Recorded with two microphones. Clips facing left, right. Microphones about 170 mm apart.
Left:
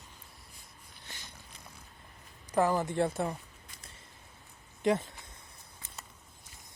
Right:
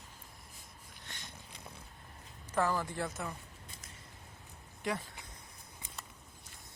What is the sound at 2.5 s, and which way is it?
Speech, 15° left (ahead or behind).